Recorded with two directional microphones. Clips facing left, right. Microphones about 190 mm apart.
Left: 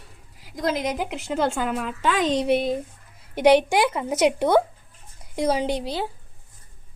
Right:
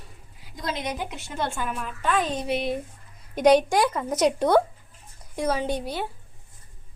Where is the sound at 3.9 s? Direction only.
10° left (ahead or behind).